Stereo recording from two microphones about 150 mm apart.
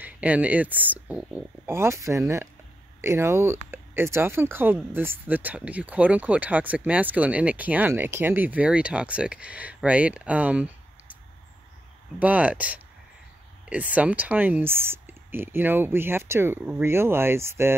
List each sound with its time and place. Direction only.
0.0 s speech: 10° right (ahead or behind)
12.2 s speech: 10° right (ahead or behind)